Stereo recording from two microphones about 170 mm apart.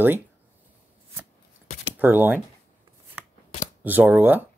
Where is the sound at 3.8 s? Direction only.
10° right (ahead or behind).